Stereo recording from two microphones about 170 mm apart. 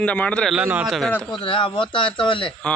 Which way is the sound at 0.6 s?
10° right (ahead or behind).